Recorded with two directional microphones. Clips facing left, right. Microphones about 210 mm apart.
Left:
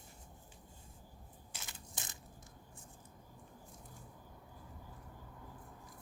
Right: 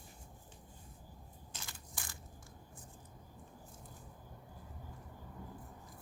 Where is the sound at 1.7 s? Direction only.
20° left (ahead or behind).